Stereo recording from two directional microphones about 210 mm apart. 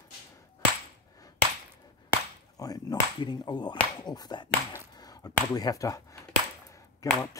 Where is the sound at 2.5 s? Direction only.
15° left (ahead or behind).